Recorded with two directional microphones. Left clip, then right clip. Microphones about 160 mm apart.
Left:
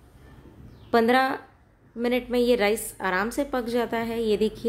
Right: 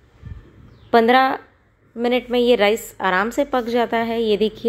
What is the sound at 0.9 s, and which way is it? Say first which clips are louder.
A woman's voice: right 7 dB; 10° right (ahead or behind).